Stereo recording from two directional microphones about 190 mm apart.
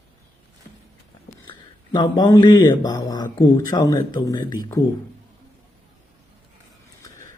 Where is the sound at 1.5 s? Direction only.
20° left (ahead or behind).